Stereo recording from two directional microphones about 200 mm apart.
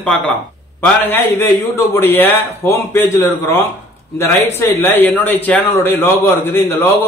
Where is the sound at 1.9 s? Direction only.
10° left (ahead or behind).